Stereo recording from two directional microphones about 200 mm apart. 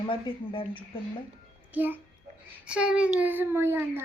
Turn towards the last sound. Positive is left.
turn(degrees=-10)  # may be behind; listen again after turning